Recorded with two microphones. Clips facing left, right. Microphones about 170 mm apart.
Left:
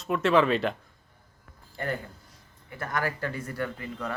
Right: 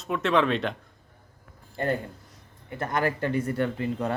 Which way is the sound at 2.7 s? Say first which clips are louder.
Right 4 dB; 20° right (ahead or behind).